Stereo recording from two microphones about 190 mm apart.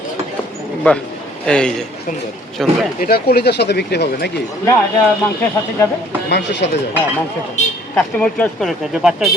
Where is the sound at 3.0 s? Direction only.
55° left (ahead or behind).